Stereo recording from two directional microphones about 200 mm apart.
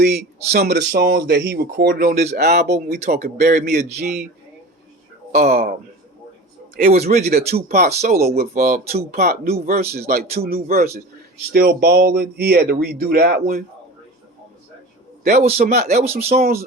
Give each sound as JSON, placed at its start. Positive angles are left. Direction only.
{"t": 0.1, "sound": "speech", "side_deg": -50}
{"t": 5.3, "sound": "speech", "side_deg": -40}
{"t": 6.9, "sound": "speech", "side_deg": -30}
{"t": 7.3, "sound": "speech", "side_deg": -50}
{"t": 15.3, "sound": "speech", "side_deg": -35}
{"t": 16.4, "sound": "speech", "side_deg": -50}